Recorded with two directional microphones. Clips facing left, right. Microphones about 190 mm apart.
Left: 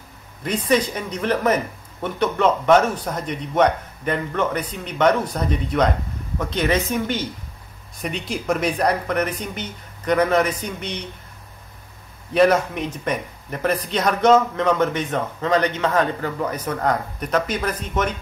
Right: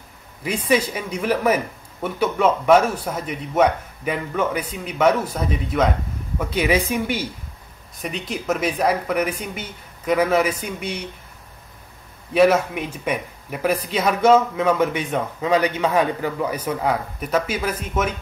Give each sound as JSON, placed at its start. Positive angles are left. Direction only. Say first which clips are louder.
{"t": 0.4, "sound": "speech", "louder": "even", "side_deg": -5}
{"t": 12.4, "sound": "speech", "louder": "right 1 dB", "side_deg": -5}